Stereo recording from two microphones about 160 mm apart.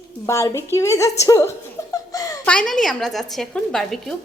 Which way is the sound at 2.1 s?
20° left (ahead or behind).